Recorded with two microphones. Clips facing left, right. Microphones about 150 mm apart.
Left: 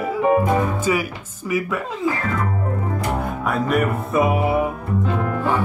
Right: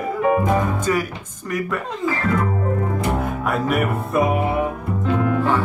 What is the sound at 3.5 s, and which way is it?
Speech, centre (ahead or behind).